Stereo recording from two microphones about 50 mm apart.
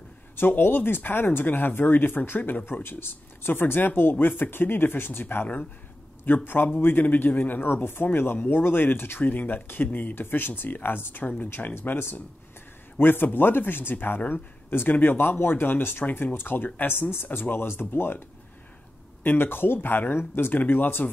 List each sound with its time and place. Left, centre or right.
0.4 s speech: left
5.2 s speech: left
7.7 s speech: left
9.2 s speech: left
19.2 s speech: left